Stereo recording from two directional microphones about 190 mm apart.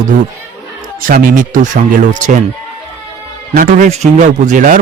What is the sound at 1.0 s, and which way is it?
Speech, 45° right (ahead or behind).